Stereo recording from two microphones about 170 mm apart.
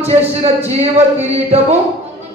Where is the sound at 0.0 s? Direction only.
35° right (ahead or behind).